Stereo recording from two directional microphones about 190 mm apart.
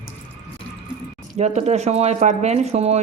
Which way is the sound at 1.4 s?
35° right (ahead or behind).